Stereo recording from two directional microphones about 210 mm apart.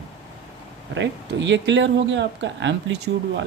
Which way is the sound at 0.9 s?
60° right (ahead or behind).